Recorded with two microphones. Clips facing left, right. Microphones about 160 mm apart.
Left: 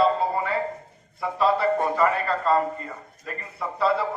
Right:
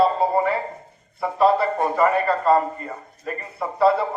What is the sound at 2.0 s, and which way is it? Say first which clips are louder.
A man's voice: right 4 dB; 45° right (ahead or behind).